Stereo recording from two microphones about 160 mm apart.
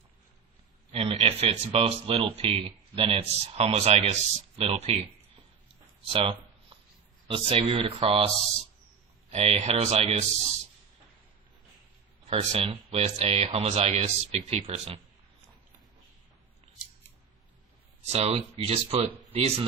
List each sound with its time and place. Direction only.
0.9 s speech: 40° right (ahead or behind)
6.1 s a sound: 30° right (ahead or behind)
7.3 s speech: 35° right (ahead or behind)
9.3 s speech: 40° right (ahead or behind)
12.3 s speech: 40° right (ahead or behind)
18.0 s speech: 40° right (ahead or behind)